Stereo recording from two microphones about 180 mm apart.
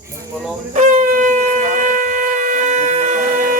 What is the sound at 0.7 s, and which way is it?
Shofar, 40° right (ahead or behind).